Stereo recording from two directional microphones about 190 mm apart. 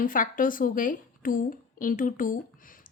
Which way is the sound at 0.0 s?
45° left (ahead or behind).